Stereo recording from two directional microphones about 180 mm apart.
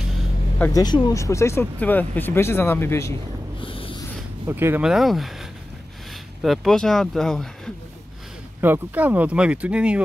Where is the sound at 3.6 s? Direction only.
30° left (ahead or behind).